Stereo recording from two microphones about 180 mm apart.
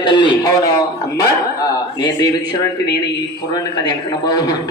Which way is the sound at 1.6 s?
20° left (ahead or behind).